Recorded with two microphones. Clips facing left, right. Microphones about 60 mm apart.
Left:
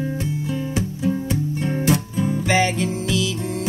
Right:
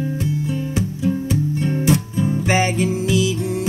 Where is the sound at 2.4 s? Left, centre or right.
Right.